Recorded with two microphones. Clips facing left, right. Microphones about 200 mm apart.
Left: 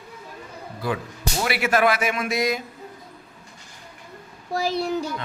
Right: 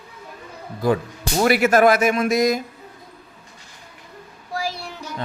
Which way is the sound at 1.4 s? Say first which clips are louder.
Right 6 dB; 45° right (ahead or behind).